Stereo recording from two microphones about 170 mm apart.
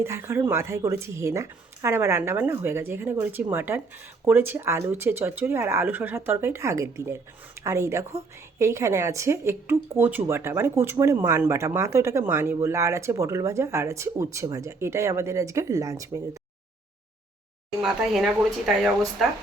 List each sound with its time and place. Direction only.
0.0 s speech: 15° right (ahead or behind)
17.8 s speech: 5° right (ahead or behind)